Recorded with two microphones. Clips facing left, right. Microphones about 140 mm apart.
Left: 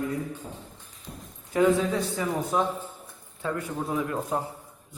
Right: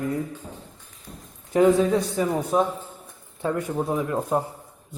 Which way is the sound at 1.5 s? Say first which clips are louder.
Right 4 dB; 20° right (ahead or behind).